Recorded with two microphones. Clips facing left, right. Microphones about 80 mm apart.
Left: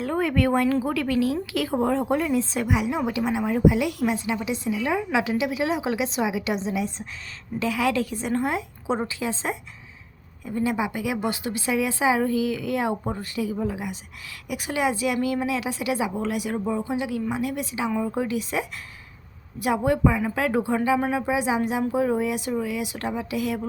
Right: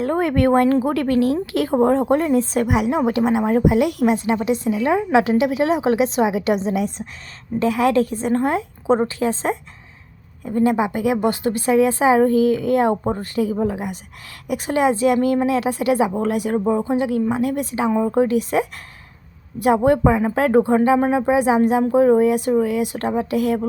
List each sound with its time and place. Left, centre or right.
0.0 s speech: right
7.6 s a woman's voice: right
10.4 s speech: right